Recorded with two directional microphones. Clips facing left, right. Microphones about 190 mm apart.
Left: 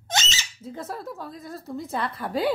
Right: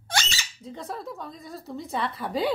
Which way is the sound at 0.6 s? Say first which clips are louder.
Left 1 dB; 5° left (ahead or behind).